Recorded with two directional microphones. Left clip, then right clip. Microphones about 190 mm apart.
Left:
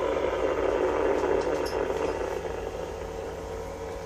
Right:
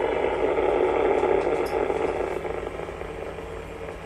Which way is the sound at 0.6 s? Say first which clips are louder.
Right 4 dB; 50° right (ahead or behind).